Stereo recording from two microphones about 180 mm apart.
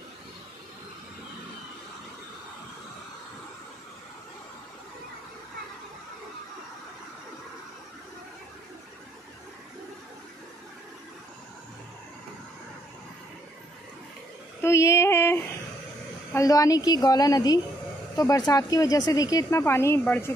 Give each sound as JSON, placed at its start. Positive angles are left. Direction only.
{"t": 14.6, "sound": "female singing", "side_deg": 15}
{"t": 16.3, "sound": "a woman's voice", "side_deg": 20}